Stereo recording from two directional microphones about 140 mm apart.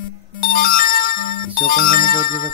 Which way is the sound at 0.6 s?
85° left.